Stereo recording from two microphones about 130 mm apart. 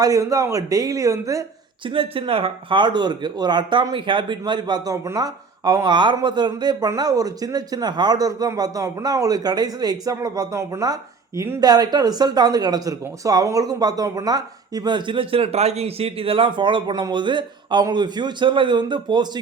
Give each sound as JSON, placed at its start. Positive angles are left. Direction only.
{"t": 0.0, "sound": "speech", "side_deg": -25}
{"t": 1.9, "sound": "speech", "side_deg": -45}
{"t": 11.6, "sound": "speech", "side_deg": -30}